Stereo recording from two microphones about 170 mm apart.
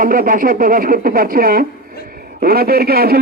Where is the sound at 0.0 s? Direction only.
55° right (ahead or behind).